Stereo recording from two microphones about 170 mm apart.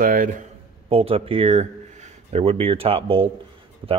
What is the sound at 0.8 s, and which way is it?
Speech, 35° right (ahead or behind).